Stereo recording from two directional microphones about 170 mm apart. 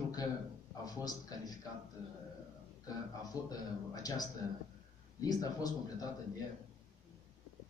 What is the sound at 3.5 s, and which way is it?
Speech, 20° left (ahead or behind).